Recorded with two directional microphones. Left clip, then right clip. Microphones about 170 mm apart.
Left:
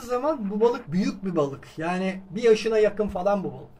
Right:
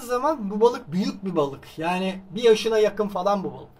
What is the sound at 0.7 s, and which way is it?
Speech, 55° left (ahead or behind).